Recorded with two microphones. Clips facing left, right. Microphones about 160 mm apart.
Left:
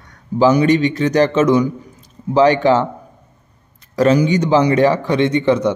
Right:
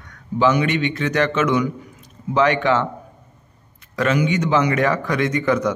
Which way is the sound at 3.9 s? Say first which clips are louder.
Left 6 dB; 35° left (ahead or behind).